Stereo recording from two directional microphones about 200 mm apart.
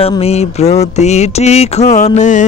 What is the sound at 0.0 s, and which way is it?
Mantra, 30° left (ahead or behind).